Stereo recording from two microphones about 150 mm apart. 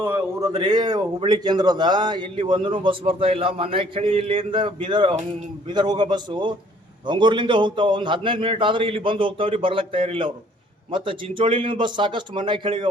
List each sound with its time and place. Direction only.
0.0 s a man's voice: 20° right (ahead or behind); by 12.9 s 35° right (ahead or behind)